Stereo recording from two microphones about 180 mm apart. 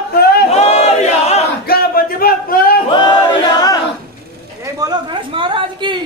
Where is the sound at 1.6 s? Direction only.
55° left (ahead or behind).